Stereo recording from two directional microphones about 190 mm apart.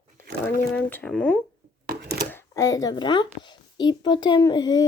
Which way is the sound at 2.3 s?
15° left (ahead or behind).